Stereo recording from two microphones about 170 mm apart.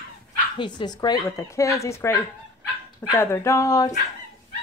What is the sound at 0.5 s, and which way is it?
Speech, 25° left (ahead or behind).